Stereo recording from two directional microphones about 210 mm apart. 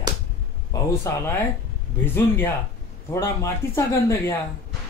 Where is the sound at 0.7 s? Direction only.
15° left (ahead or behind).